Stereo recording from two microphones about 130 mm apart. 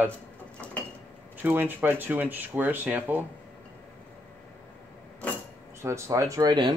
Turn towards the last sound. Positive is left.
turn(degrees=-30)  # may be behind; listen again after turning